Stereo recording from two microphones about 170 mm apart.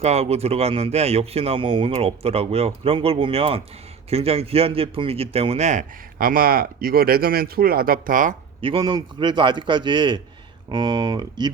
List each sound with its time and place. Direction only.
0.0 s a man's voice: 40° right (ahead or behind)
8.6 s a man's voice: 30° right (ahead or behind)